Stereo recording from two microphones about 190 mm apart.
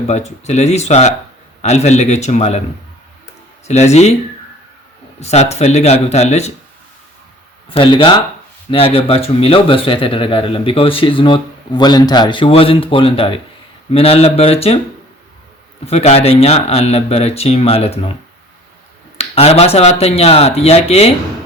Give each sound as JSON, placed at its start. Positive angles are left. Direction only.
{"t": 0.1, "sound": "speech", "side_deg": 35}
{"t": 3.7, "sound": "speech", "side_deg": 35}
{"t": 5.2, "sound": "speech", "side_deg": 35}
{"t": 7.7, "sound": "speech", "side_deg": 25}
{"t": 15.9, "sound": "speech", "side_deg": 35}
{"t": 19.1, "sound": "speech", "side_deg": 30}